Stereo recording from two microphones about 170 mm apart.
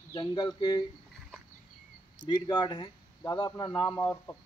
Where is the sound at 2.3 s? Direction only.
25° left (ahead or behind).